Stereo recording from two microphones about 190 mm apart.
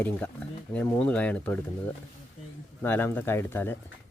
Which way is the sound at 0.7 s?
5° left (ahead or behind).